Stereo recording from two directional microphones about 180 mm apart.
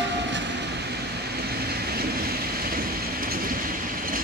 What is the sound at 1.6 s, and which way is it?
Train, 60° right (ahead or behind).